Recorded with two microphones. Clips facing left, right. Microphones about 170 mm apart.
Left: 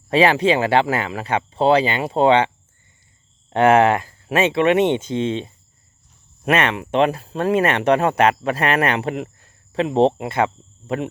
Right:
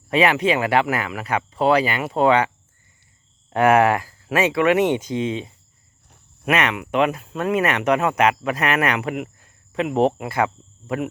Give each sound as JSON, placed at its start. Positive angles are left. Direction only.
{"t": 0.1, "sound": "speech", "side_deg": 30}
{"t": 3.5, "sound": "speech", "side_deg": 25}